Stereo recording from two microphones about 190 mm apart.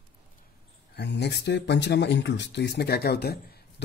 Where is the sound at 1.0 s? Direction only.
65° left (ahead or behind).